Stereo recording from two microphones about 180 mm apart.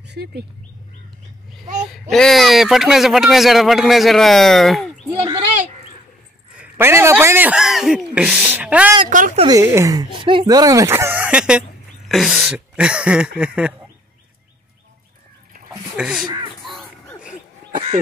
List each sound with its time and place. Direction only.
0.0 s speech: 65° right (ahead or behind)
1.9 s a man's voice: centre (ahead or behind)
6.5 s speech: 10° right (ahead or behind)
9.1 s speech: 45° right (ahead or behind)
9.5 s a man's voice: 15° right (ahead or behind)
16.0 s a man's voice: 5° right (ahead or behind)